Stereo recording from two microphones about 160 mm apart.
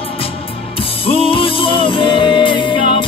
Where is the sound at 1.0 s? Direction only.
35° left (ahead or behind).